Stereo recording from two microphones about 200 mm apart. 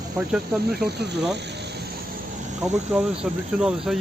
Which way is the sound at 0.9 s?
55° right (ahead or behind).